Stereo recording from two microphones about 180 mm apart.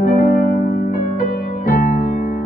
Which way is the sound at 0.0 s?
55° left (ahead or behind).